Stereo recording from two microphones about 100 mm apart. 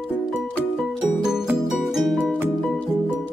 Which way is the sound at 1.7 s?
Centre (ahead or behind).